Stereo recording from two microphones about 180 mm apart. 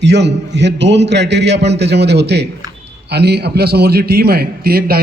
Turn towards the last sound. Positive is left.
turn(degrees=-60)  # may be behind; listen again after turning